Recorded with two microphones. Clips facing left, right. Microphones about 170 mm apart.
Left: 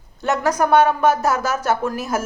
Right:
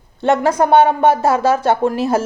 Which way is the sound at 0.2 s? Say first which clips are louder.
Right 5 dB; 25° right (ahead or behind).